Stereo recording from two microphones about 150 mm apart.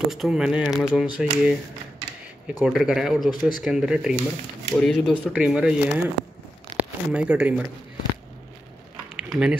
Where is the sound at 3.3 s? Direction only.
30° left (ahead or behind).